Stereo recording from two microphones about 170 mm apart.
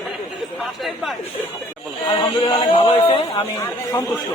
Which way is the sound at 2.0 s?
25° left (ahead or behind).